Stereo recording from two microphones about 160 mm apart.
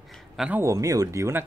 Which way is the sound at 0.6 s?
20° right (ahead or behind).